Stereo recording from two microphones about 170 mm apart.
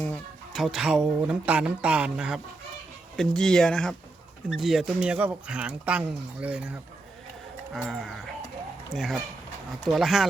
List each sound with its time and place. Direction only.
0.0 s speech: 5° left (ahead or behind)